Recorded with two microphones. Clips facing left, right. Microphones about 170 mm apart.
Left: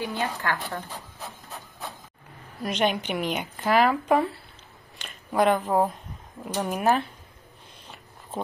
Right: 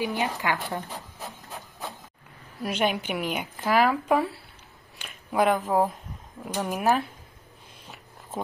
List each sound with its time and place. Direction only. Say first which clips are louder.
0.0 s speech: right 1 dB; 15° right (ahead or behind)
2.6 s speech: left 1 dB; 5° right (ahead or behind)
4.9 s a sound: left 1 dB; 5° right (ahead or behind)
6.4 s speech: left 1 dB; 5° right (ahead or behind)